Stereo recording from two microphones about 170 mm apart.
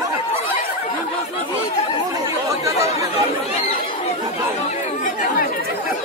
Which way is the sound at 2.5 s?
20° right (ahead or behind).